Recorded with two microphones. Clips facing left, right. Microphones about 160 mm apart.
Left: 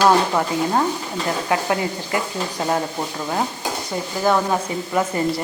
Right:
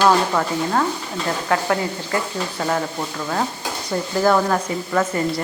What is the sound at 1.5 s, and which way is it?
Speech, 20° left (ahead or behind).